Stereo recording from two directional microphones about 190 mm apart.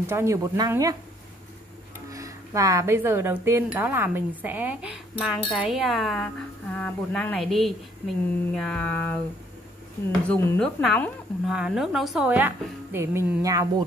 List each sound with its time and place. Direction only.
0.0 s speech: 15° right (ahead or behind)
2.0 s a woman's voice: 15° right (ahead or behind); by 7.7 s centre (ahead or behind)
8.5 s mantra: 5° left (ahead or behind)
10.2 s speech: 10° left (ahead or behind); by 13.8 s 15° right (ahead or behind)